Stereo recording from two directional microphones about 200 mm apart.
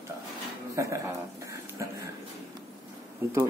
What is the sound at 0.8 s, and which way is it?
Speech, 15° right (ahead or behind).